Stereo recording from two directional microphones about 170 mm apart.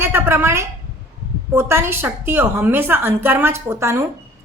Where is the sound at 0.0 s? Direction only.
15° right (ahead or behind).